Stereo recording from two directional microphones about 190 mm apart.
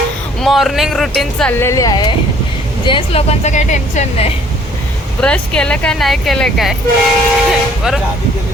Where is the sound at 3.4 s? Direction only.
40° left (ahead or behind).